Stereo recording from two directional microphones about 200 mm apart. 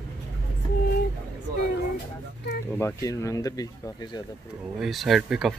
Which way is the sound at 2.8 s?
15° left (ahead or behind).